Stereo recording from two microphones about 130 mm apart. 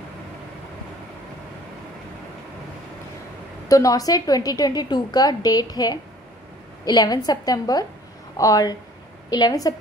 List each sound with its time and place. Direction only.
3.6 s a woman's voice: 25° left (ahead or behind)